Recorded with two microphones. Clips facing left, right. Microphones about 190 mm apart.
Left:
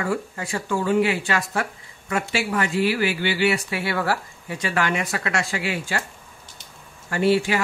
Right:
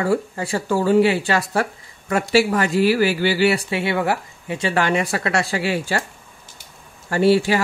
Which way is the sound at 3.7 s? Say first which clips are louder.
Right 4 dB; 25° right (ahead or behind).